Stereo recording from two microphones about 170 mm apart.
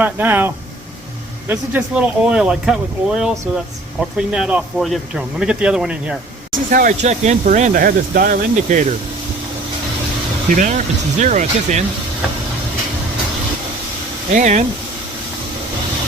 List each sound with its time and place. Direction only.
0.0 s speech: 10° right (ahead or behind)
6.7 s speech: 55° right (ahead or behind)
10.5 s speech: 45° right (ahead or behind)
14.3 s speech: 45° right (ahead or behind)